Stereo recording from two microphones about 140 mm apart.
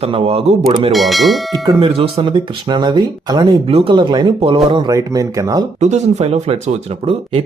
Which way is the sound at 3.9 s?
35° right (ahead or behind).